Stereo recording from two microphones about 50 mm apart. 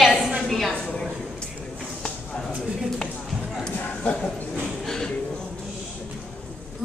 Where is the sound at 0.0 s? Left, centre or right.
Centre.